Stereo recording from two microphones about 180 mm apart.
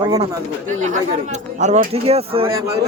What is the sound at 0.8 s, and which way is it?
Speech, 45° right (ahead or behind).